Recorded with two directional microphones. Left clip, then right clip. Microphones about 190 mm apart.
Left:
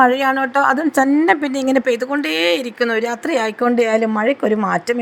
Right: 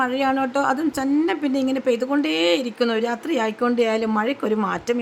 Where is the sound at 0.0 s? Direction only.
30° left (ahead or behind).